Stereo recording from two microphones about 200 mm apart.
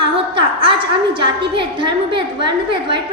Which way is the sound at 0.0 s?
25° right (ahead or behind).